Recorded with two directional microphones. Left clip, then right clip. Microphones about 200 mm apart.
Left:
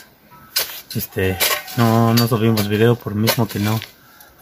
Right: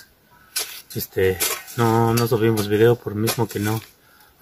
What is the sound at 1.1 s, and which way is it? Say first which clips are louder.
Cutlery: left 2 dB; 10° right (ahead or behind).